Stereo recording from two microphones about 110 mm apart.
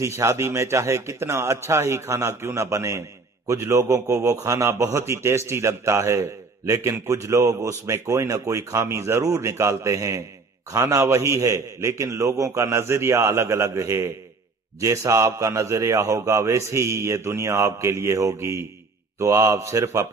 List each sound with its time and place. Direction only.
0.0 s speech: 25° right (ahead or behind)